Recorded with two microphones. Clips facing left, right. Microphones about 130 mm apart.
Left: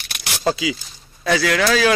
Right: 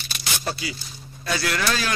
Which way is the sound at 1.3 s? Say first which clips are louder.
Left 7 dB; 90° left.